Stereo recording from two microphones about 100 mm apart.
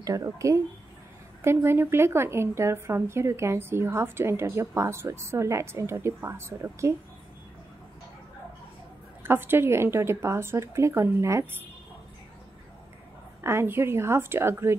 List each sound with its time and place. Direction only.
0.0 s a woman's voice: 35° right (ahead or behind)
9.2 s a woman's voice: 20° right (ahead or behind)
13.4 s a woman's voice: 25° right (ahead or behind)